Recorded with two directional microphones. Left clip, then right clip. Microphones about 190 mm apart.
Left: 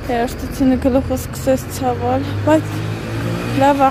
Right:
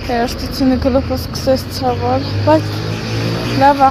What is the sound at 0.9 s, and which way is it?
Speech, 20° left (ahead or behind).